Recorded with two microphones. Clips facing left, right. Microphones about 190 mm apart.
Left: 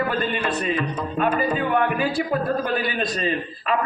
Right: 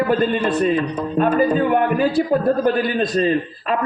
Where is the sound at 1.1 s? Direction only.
35° right (ahead or behind).